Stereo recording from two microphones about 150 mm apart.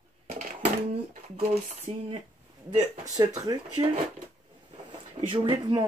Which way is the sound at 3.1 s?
25° right (ahead or behind).